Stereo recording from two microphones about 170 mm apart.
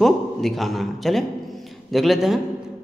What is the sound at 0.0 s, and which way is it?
A man's voice, centre (ahead or behind).